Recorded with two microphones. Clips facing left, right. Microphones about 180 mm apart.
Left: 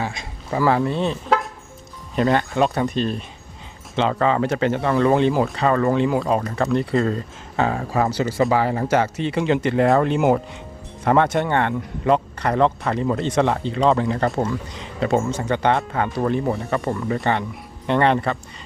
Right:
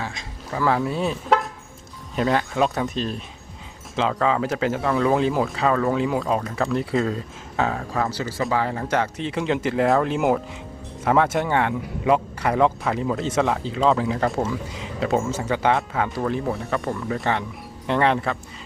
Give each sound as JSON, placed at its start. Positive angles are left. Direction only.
{"t": 0.0, "sound": "a sound", "side_deg": 10}
{"t": 0.7, "sound": "speech", "side_deg": -5}
{"t": 8.0, "sound": "speech", "side_deg": 20}
{"t": 8.5, "sound": "speech", "side_deg": 10}